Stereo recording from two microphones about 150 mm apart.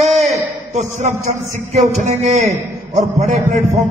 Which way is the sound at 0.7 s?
50° right (ahead or behind).